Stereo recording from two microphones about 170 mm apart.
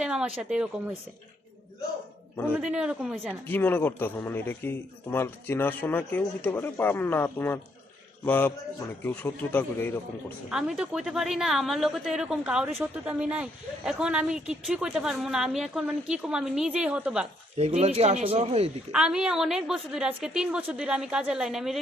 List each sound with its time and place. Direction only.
0.0 s speech: 5° right (ahead or behind)
2.5 s speech: 5° right (ahead or behind)
3.2 s a man's voice: 10° left (ahead or behind)
10.5 s speech: 5° right (ahead or behind)
17.6 s speech: 40° right (ahead or behind)
18.9 s speech: 5° right (ahead or behind)